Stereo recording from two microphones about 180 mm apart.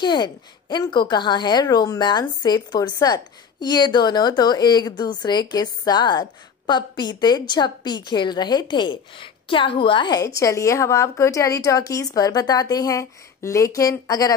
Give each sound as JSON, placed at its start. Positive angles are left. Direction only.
{"t": 0.0, "sound": "a woman's voice", "side_deg": 25}